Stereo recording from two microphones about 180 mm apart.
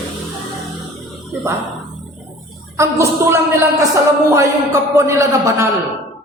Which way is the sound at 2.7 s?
15° right (ahead or behind).